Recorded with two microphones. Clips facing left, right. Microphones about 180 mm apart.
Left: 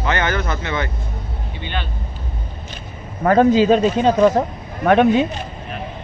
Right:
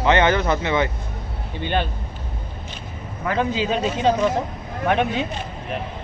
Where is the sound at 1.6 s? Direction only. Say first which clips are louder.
Right 6 dB; 45° right (ahead or behind).